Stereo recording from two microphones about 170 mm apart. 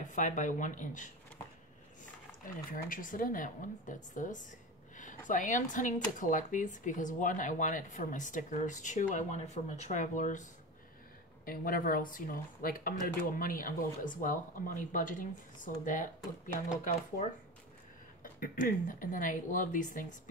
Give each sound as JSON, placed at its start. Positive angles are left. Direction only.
{"t": 0.1, "sound": "speech", "side_deg": 50}
{"t": 2.4, "sound": "speech", "side_deg": 55}
{"t": 18.2, "sound": "speech", "side_deg": 55}